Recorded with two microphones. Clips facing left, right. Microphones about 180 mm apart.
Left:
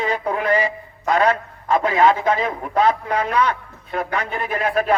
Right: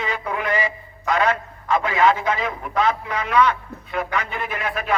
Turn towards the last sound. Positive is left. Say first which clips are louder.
# left 6 dB
turn(degrees=35)  # may be behind; listen again after turning